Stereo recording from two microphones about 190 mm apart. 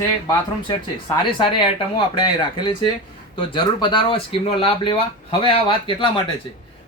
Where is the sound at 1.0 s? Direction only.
25° left (ahead or behind).